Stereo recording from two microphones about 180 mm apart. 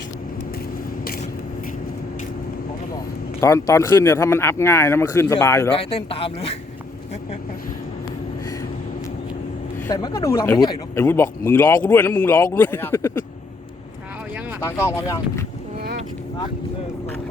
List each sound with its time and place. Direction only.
3.4 s speech: 15° left (ahead or behind)
5.7 s speech: 30° left (ahead or behind)
9.8 s speech: 20° left (ahead or behind)
14.6 s speech: 15° left (ahead or behind)